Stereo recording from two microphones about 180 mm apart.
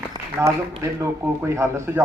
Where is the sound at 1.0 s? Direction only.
15° right (ahead or behind).